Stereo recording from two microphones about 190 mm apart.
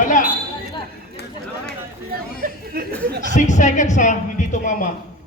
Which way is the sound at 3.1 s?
55° right (ahead or behind).